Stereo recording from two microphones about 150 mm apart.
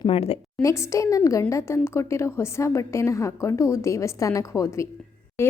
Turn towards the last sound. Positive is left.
turn(degrees=15)  # may be behind; listen again after turning